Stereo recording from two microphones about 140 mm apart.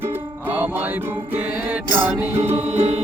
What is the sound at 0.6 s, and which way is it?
Music, 10° right (ahead or behind).